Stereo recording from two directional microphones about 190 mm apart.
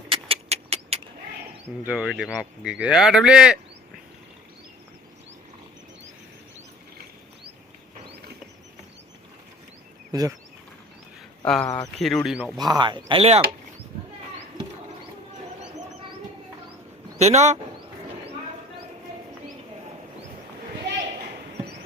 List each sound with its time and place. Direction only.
0.1 s a sound: 30° right (ahead or behind)
1.8 s speech: 5° right (ahead or behind)
8.1 s a sound: 60° right (ahead or behind)
10.1 s speech: 20° right (ahead or behind)
11.4 s speech: 5° left (ahead or behind)
12.5 s speech: 20° right (ahead or behind)
17.2 s a man's voice: 35° right (ahead or behind)